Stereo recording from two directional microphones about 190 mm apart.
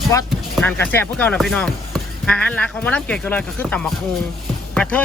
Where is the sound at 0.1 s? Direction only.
15° left (ahead or behind).